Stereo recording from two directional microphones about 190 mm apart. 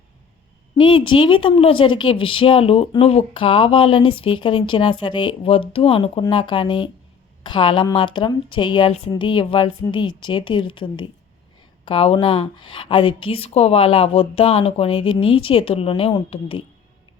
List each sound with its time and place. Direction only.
0.8 s speech: 25° left (ahead or behind)